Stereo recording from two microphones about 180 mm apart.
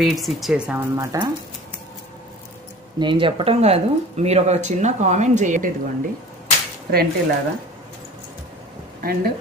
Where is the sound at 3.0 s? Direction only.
25° right (ahead or behind).